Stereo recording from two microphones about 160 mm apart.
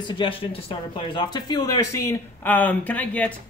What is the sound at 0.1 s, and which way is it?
Speech, 35° left (ahead or behind).